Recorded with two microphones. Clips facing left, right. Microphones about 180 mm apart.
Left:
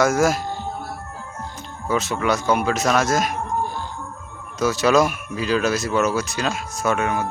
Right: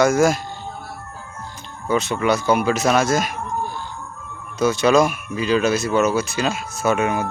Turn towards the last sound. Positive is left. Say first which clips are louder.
# right 2 dB
turn(degrees=-15)  # may be behind; listen again after turning